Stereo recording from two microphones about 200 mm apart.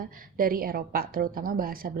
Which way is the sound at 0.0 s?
45° right (ahead or behind).